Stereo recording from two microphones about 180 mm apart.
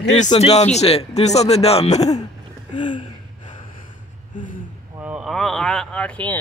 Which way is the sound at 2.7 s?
25° left (ahead or behind).